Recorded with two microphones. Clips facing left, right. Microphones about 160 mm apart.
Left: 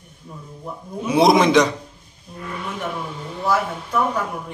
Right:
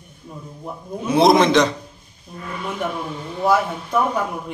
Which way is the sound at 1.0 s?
10° left (ahead or behind).